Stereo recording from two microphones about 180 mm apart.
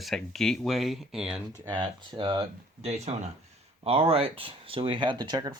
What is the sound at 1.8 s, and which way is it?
Speech, 25° right (ahead or behind).